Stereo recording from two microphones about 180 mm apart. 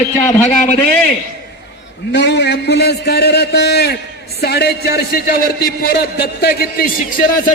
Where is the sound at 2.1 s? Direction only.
70° left (ahead or behind).